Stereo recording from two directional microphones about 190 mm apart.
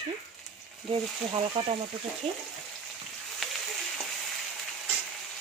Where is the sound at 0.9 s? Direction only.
30° right (ahead or behind).